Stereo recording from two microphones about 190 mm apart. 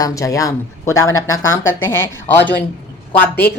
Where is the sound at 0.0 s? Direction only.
15° left (ahead or behind).